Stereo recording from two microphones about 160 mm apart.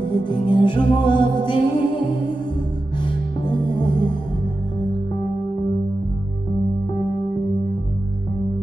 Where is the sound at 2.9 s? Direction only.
30° left (ahead or behind).